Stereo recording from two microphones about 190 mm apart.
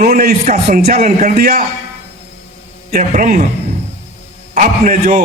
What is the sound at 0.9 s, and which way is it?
Speech, 40° right (ahead or behind).